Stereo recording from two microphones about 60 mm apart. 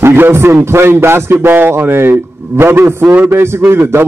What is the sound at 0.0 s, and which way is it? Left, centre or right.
A man's voice, right.